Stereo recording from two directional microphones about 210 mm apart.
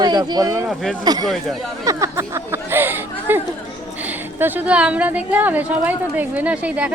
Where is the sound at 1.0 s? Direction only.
20° right (ahead or behind).